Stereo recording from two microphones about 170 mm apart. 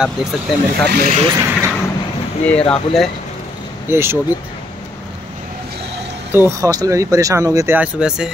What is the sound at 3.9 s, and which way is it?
Speech, 15° right (ahead or behind).